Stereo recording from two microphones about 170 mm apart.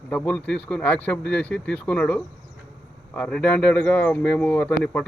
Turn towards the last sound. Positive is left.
turn(degrees=5)  # may be behind; listen again after turning